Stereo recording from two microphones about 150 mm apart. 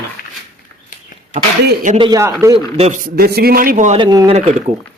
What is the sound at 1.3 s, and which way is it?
Speech, 80° right.